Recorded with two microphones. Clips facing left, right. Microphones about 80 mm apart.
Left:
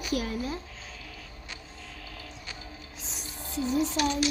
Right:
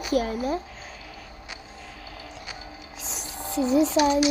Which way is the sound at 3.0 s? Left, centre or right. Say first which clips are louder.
Right 8 dB; right.